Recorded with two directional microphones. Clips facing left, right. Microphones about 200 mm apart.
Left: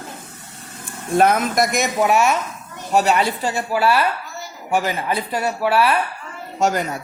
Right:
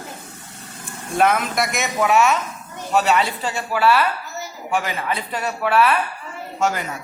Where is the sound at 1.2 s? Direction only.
40° left (ahead or behind).